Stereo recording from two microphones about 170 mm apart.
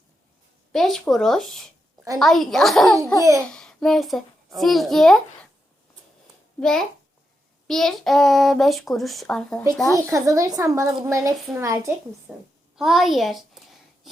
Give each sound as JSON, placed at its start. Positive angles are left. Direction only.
{"t": 0.7, "sound": "a child's voice", "side_deg": 0}
{"t": 6.6, "sound": "a child's voice", "side_deg": 5}
{"t": 10.0, "sound": "a woman's voice", "side_deg": -20}
{"t": 12.3, "sound": "a child's voice", "side_deg": 0}
{"t": 12.7, "sound": "a sound", "side_deg": 0}